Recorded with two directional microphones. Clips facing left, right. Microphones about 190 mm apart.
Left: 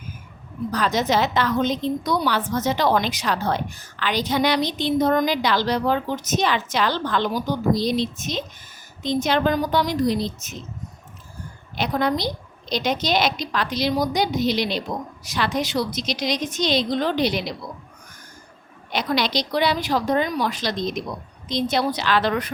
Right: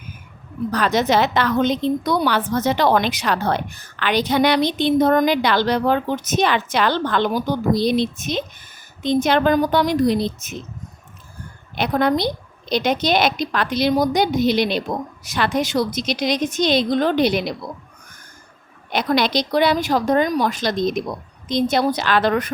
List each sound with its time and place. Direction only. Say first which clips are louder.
0.7 s a woman's voice: right 3 dB; 65° right (ahead or behind)
11.7 s a woman's voice: right 4 dB; 55° right (ahead or behind)
18.9 s a woman's voice: right 4 dB; 50° right (ahead or behind)